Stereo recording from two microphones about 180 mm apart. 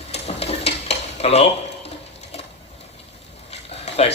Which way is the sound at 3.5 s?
35° left (ahead or behind).